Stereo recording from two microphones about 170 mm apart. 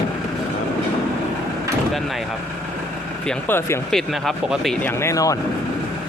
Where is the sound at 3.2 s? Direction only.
10° left (ahead or behind).